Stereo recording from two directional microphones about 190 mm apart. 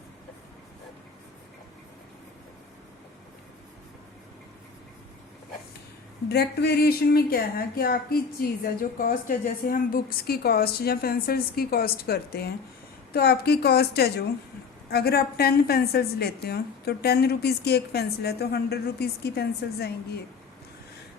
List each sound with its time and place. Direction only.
6.2 s a woman's voice: 60° left (ahead or behind)